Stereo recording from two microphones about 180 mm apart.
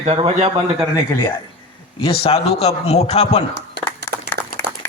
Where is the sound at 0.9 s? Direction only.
15° left (ahead or behind).